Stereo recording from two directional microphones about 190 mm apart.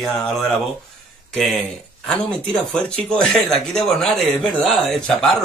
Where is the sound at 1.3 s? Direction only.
5° left (ahead or behind).